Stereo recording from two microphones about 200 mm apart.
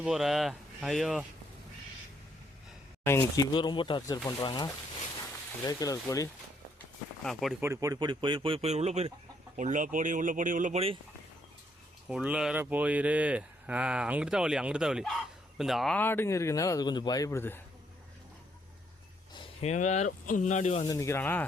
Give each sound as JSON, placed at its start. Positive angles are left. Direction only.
{"t": 0.0, "sound": "speech", "side_deg": 0}
{"t": 3.0, "sound": "speech", "side_deg": 10}
{"t": 7.6, "sound": "speech", "side_deg": -15}
{"t": 12.0, "sound": "speech", "side_deg": -5}
{"t": 19.3, "sound": "a sound", "side_deg": 25}
{"t": 19.7, "sound": "speech", "side_deg": 35}
{"t": 20.8, "sound": "speech", "side_deg": 15}